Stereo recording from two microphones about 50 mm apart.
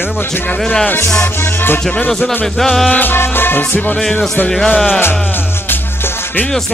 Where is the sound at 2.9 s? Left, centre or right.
Left.